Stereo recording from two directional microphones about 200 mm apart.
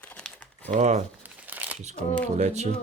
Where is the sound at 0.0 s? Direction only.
5° left (ahead or behind).